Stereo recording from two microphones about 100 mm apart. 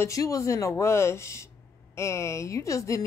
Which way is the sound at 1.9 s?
30° left (ahead or behind).